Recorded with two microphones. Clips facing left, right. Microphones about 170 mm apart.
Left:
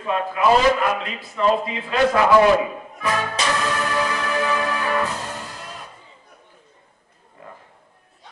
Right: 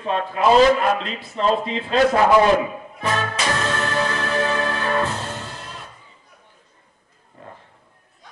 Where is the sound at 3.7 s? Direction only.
25° right (ahead or behind).